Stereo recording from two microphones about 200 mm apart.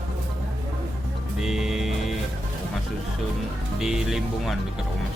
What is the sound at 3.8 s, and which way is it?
Speech, centre (ahead or behind).